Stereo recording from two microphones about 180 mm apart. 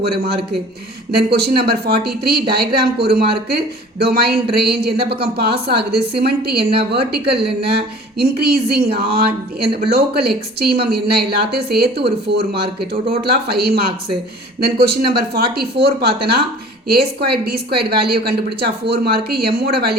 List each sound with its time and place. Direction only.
1.3 s a woman's voice: 60° right (ahead or behind)